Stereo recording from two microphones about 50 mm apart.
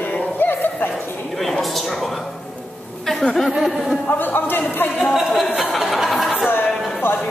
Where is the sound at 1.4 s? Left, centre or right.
Centre.